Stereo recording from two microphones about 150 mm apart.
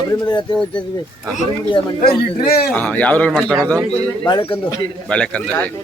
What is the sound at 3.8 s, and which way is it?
Speech, 25° right (ahead or behind).